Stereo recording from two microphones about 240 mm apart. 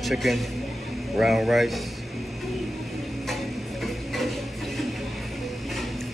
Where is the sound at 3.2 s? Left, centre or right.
Centre.